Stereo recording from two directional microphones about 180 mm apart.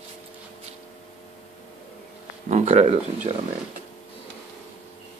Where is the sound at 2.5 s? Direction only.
35° right (ahead or behind).